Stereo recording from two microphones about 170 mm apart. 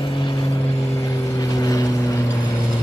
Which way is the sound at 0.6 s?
15° left (ahead or behind).